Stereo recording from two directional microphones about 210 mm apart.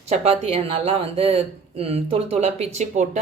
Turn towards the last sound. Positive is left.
turn(degrees=-35)  # may be behind; listen again after turning